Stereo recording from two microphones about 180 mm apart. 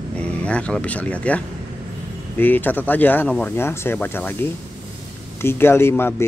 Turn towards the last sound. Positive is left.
turn(degrees=15)  # may be behind; listen again after turning